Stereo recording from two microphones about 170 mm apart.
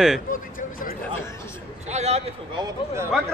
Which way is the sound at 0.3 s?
55° left (ahead or behind).